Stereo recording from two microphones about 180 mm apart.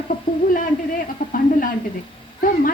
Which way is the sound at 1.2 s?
50° left (ahead or behind).